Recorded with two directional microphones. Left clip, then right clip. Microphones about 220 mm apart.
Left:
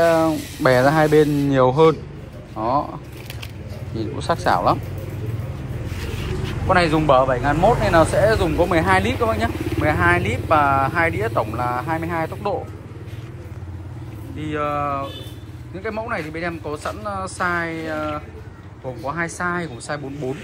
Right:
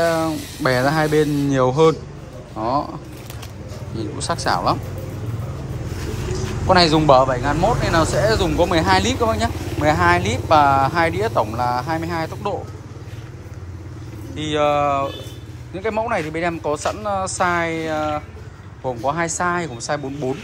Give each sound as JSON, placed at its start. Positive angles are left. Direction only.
{"t": 0.0, "sound": "speech", "side_deg": 0}
{"t": 6.7, "sound": "a man's voice", "side_deg": -20}
{"t": 14.3, "sound": "speech", "side_deg": -10}